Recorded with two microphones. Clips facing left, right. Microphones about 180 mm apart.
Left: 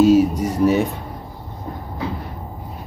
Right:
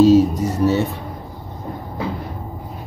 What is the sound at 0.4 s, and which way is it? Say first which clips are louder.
Speech: left 1 dB; 90° left.